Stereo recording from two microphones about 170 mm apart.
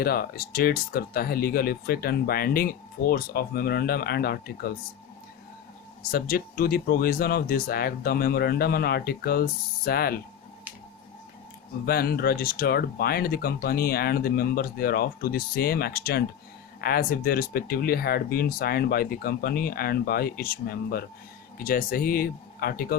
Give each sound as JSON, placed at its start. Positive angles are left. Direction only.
{"t": 0.0, "sound": "speech", "side_deg": 60}
{"t": 6.1, "sound": "speech", "side_deg": 60}
{"t": 11.9, "sound": "speech", "side_deg": 65}